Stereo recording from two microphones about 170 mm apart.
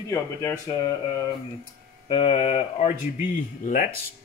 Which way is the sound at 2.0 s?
35° left (ahead or behind).